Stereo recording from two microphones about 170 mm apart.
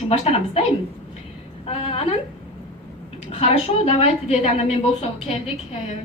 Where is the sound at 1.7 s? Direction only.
35° left (ahead or behind).